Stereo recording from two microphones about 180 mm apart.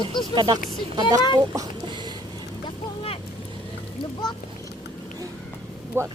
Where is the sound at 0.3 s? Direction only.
25° right (ahead or behind).